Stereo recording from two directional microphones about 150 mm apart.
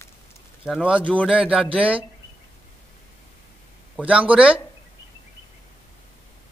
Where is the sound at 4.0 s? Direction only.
10° right (ahead or behind).